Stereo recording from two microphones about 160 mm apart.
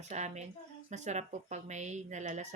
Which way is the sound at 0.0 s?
45° right (ahead or behind).